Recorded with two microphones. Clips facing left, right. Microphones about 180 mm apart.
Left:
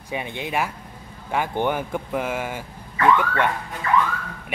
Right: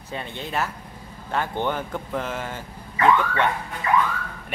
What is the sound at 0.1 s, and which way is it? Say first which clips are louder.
Speech: left 3 dB; 15° left (ahead or behind).